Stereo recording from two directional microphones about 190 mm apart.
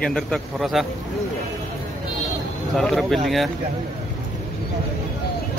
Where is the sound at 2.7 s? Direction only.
Centre (ahead or behind).